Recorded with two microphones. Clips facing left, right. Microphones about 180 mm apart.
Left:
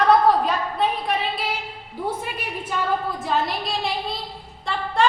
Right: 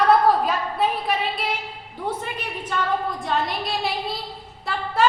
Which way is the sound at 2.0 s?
10° left (ahead or behind).